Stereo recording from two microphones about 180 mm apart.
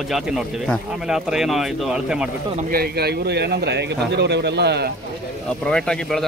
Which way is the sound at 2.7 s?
60° right (ahead or behind).